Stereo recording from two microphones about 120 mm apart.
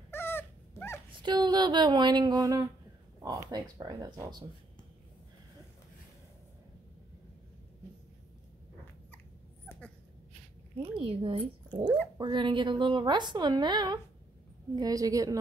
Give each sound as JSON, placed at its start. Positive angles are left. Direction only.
{"t": 0.1, "sound": "dog", "side_deg": 20}
{"t": 1.2, "sound": "a woman's voice", "side_deg": -40}
{"t": 9.7, "sound": "dog", "side_deg": 10}
{"t": 10.8, "sound": "a woman's voice", "side_deg": -50}